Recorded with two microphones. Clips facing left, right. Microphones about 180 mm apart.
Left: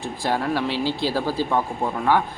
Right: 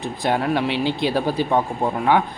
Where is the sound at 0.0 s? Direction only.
20° right (ahead or behind).